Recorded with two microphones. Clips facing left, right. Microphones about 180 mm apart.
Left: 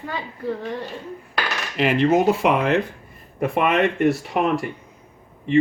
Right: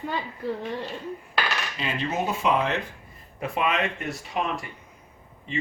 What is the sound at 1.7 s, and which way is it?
Speech, 80° left.